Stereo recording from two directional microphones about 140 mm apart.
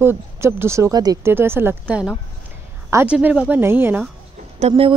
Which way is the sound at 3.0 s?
10° right (ahead or behind).